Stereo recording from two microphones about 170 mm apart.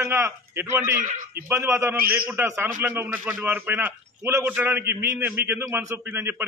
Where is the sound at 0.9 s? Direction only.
50° right (ahead or behind).